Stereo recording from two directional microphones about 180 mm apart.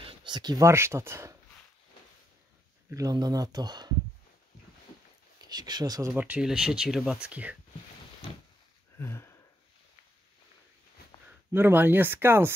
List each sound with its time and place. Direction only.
0.0 s speech: 25° right (ahead or behind)
2.9 s speech: 20° right (ahead or behind)
5.4 s speech: 20° right (ahead or behind); by 7.5 s 5° right (ahead or behind)
8.9 s a sound: 15° left (ahead or behind)
11.5 s speech: 10° right (ahead or behind)